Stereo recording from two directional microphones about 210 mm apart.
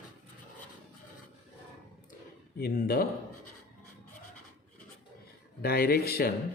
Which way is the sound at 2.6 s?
45° left (ahead or behind).